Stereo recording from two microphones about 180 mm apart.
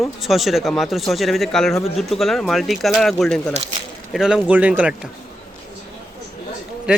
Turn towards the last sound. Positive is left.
turn(degrees=-5)  # may be behind; listen again after turning